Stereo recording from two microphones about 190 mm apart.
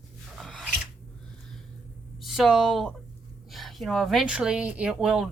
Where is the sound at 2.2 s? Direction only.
Centre (ahead or behind).